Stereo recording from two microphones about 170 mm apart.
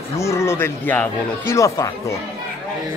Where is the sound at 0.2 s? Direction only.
15° left (ahead or behind).